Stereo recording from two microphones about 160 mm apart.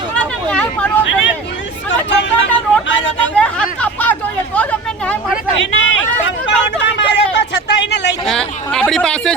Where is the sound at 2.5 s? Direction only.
10° left (ahead or behind).